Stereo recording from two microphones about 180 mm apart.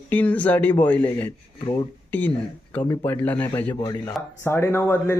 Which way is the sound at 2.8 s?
25° left (ahead or behind).